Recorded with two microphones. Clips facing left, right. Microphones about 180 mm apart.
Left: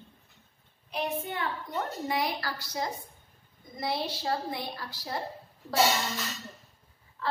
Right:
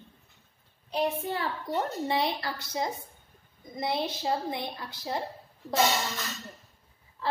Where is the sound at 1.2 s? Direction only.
30° right (ahead or behind).